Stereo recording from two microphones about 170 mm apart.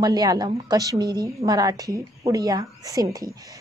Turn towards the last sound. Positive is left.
turn(degrees=-20)  # may be behind; listen again after turning